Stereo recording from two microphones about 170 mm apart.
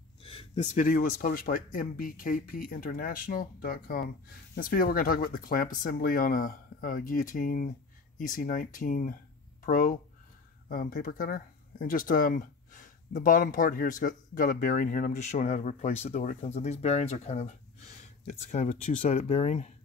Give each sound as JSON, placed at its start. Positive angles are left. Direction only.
{"t": 0.2, "sound": "speech", "side_deg": 35}